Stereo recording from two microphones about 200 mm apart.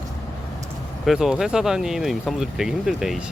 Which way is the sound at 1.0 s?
Centre (ahead or behind).